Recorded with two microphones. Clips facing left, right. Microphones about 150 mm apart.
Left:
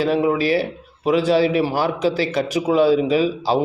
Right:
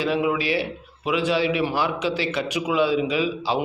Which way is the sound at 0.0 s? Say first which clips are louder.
Left 5 dB; 40° left (ahead or behind).